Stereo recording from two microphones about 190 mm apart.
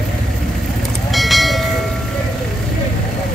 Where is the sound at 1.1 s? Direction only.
Centre (ahead or behind).